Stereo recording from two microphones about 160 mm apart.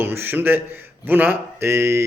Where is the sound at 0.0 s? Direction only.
15° right (ahead or behind).